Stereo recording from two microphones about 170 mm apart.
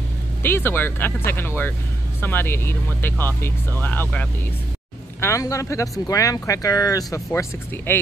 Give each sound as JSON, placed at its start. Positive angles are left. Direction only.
{"t": 0.4, "sound": "speech", "side_deg": 15}